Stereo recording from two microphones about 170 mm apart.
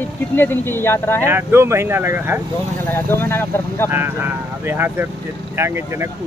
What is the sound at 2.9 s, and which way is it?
Speech, 10° left (ahead or behind).